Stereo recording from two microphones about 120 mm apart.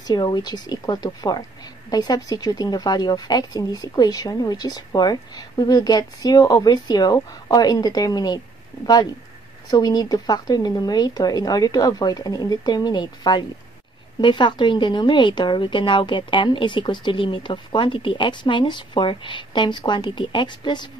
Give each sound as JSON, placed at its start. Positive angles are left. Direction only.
{"t": 0.0, "sound": "speech", "side_deg": 35}